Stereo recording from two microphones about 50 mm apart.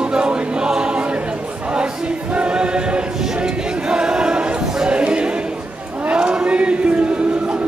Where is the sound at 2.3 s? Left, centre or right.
Right.